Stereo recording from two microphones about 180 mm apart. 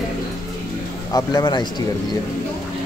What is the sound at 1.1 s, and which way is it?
Speech, 20° left (ahead or behind).